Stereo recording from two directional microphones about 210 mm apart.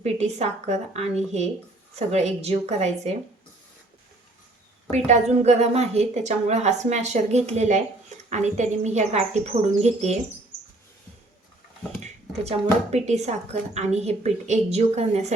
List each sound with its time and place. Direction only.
0.0 s a woman's voice: 35° right (ahead or behind)
4.9 s a woman's voice: 35° right (ahead or behind)
12.0 s a woman's voice: 30° right (ahead or behind)